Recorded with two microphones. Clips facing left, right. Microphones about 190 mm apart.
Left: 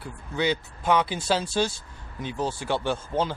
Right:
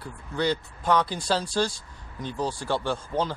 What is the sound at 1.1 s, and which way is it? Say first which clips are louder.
Speech: left 1 dB; 20° left (ahead or behind).